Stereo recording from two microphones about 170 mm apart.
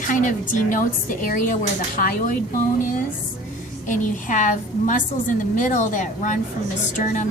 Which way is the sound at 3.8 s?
50° left (ahead or behind).